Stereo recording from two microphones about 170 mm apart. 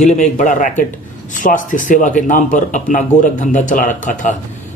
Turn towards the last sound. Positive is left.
turn(degrees=50)  # may be behind; listen again after turning